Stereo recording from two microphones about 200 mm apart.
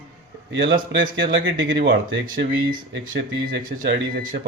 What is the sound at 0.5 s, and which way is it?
Speech, 60° right (ahead or behind).